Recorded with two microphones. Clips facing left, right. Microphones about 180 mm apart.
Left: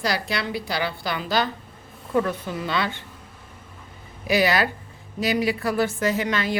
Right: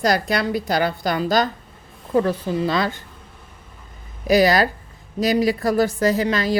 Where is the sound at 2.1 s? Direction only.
30° right (ahead or behind).